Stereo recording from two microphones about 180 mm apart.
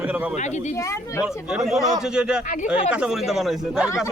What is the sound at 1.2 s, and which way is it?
Speech, 5° right (ahead or behind).